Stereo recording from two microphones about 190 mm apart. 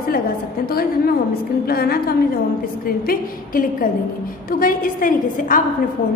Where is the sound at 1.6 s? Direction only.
50° left (ahead or behind).